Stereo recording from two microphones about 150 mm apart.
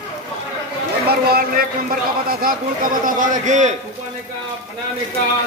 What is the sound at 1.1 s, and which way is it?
Speech, 90° right.